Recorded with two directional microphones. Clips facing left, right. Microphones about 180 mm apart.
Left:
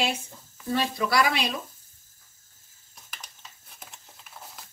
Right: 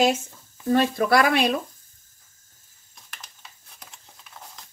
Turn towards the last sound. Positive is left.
turn(degrees=5)  # may be behind; listen again after turning